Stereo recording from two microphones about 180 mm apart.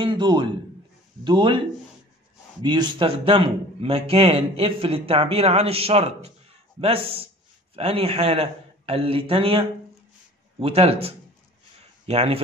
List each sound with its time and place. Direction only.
0.0 s a man's voice: 25° right (ahead or behind)
2.6 s a man's voice: 25° right (ahead or behind)
7.7 s a man's voice: 30° right (ahead or behind)